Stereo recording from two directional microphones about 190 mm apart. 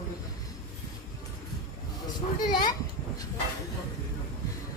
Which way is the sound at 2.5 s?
20° left (ahead or behind).